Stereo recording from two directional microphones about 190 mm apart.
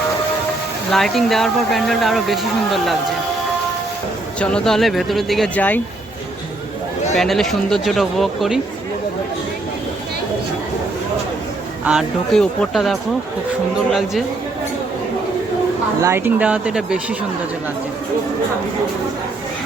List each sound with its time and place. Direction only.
0.9 s speech: centre (ahead or behind)
4.4 s speech: 5° left (ahead or behind)
7.2 s speech: centre (ahead or behind)
11.9 s speech: centre (ahead or behind)
16.0 s speech: 15° right (ahead or behind)